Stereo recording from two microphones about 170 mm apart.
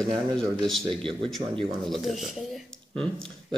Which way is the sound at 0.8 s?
30° right (ahead or behind).